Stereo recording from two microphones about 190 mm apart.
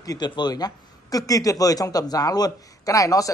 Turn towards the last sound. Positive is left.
turn(degrees=15)  # may be behind; listen again after turning